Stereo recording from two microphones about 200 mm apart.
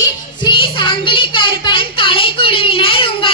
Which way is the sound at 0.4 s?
25° left (ahead or behind).